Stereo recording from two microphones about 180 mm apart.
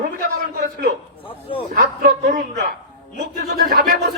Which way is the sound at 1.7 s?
55° right (ahead or behind).